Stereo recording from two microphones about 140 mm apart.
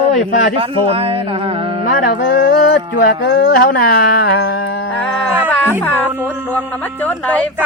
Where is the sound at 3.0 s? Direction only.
85° left.